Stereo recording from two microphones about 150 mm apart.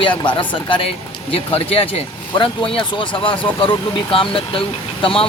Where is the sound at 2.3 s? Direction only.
35° left (ahead or behind).